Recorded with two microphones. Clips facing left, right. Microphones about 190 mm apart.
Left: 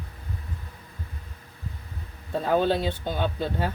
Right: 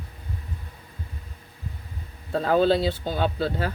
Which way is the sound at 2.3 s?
90° right.